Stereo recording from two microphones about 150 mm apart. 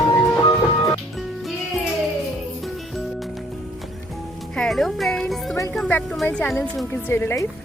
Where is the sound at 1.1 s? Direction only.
Centre (ahead or behind).